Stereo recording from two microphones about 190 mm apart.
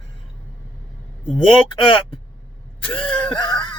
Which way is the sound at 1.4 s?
30° left (ahead or behind).